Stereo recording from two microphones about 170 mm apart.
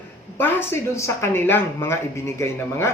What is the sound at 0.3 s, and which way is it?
Speech, 15° left (ahead or behind).